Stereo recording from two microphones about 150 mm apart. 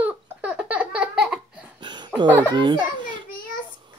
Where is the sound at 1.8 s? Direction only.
30° right (ahead or behind).